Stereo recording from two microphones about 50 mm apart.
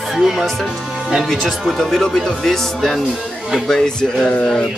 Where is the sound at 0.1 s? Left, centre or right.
Centre.